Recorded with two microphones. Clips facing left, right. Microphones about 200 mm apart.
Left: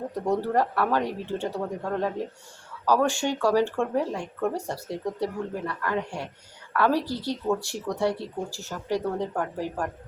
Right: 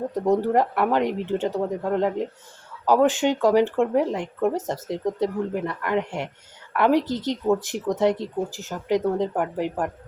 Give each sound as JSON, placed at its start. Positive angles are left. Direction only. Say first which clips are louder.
{"t": 0.3, "sound": "speech", "louder": "right 4 dB", "side_deg": -15}